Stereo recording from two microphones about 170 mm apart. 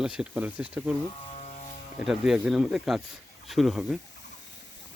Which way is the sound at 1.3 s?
45° left (ahead or behind).